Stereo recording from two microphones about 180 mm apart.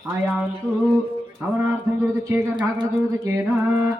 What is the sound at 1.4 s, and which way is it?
Speech, 5° right (ahead or behind).